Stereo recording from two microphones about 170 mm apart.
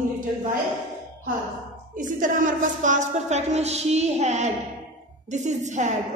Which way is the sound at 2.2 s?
50° right (ahead or behind).